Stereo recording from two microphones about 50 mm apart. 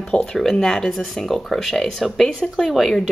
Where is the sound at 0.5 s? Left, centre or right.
Centre.